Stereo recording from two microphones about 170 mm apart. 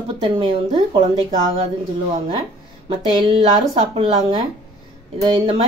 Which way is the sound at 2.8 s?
30° right (ahead or behind).